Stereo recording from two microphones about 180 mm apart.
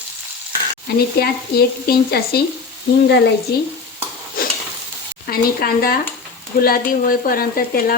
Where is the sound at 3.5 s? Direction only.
65° left (ahead or behind).